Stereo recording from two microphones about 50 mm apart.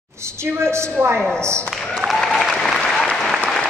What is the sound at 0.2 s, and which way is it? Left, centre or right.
A woman's voice, right.